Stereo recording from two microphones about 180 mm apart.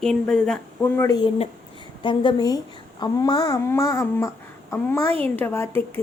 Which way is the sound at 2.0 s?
25° left (ahead or behind).